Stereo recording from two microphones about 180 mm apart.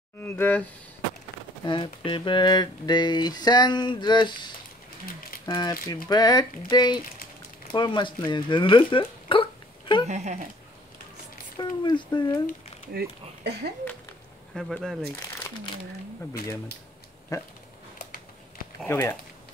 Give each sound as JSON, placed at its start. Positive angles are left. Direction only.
{"t": 0.2, "sound": "speech", "side_deg": 10}
{"t": 1.7, "sound": "speech", "side_deg": 25}
{"t": 5.5, "sound": "speech", "side_deg": 25}
{"t": 10.0, "sound": "speech", "side_deg": -40}
{"t": 11.5, "sound": "speech", "side_deg": 25}
{"t": 12.9, "sound": "speech", "side_deg": -65}
{"t": 14.5, "sound": "speech", "side_deg": 0}
{"t": 15.1, "sound": "speech", "side_deg": 15}
{"t": 17.3, "sound": "speech", "side_deg": 20}
{"t": 18.9, "sound": "speech", "side_deg": 15}